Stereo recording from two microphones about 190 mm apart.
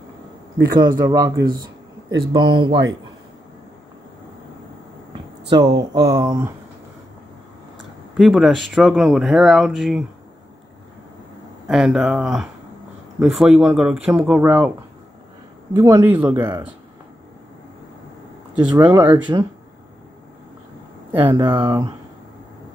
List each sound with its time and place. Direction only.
0.7 s speech: 20° right (ahead or behind)
5.8 s speech: 20° right (ahead or behind)
8.2 s speech: centre (ahead or behind)
11.6 s speech: centre (ahead or behind)
15.7 s speech: 15° right (ahead or behind)
18.7 s speech: 20° right (ahead or behind)
21.1 s speech: 25° right (ahead or behind)